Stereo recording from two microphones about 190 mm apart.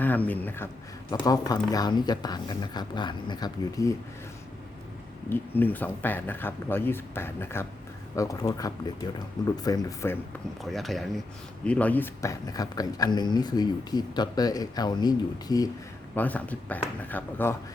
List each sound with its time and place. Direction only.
0.0 s speech: 10° left (ahead or behind)
5.3 s speech: 10° left (ahead or behind)
10.6 s speech: centre (ahead or behind); by 15.7 s 20° left (ahead or behind)
16.1 s speech: 10° left (ahead or behind)